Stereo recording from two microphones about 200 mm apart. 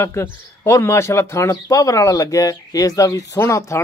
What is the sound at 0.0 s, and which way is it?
A man's voice, 15° left (ahead or behind).